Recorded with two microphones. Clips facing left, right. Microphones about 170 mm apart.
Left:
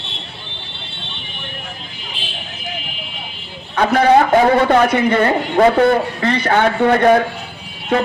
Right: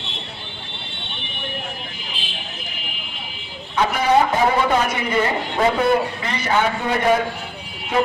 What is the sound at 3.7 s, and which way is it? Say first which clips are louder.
A man's voice: left 5 dB; 60° left (ahead or behind).